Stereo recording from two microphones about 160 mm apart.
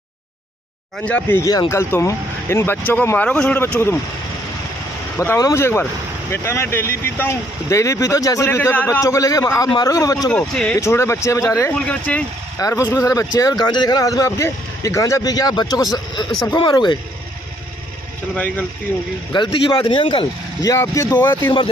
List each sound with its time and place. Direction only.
1.0 s speech: 10° left (ahead or behind)
1.4 s speech: 20° left (ahead or behind)
5.1 s speech: 15° left (ahead or behind)
10.3 s speech: 5° left (ahead or behind)
10.8 s speech: 15° left (ahead or behind)
12.5 s speech: 20° left (ahead or behind)
18.3 s speech: 10° left (ahead or behind)
19.3 s speech: 30° left (ahead or behind)
20.7 s speech: 20° left (ahead or behind)